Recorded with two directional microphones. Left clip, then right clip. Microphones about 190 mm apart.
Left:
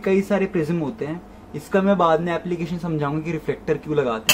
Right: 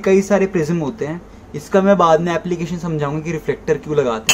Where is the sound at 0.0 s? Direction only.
5° right (ahead or behind).